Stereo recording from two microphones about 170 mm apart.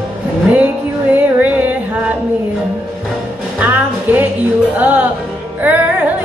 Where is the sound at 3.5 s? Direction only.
10° right (ahead or behind).